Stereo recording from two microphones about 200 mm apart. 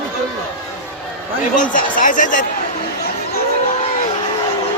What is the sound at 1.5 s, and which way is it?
Speech, 40° left (ahead or behind).